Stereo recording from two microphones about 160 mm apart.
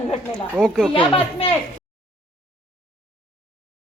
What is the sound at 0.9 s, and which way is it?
Speech, 35° left (ahead or behind).